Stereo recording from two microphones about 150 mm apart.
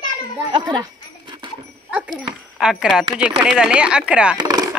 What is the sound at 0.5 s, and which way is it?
Dog, 30° right (ahead or behind).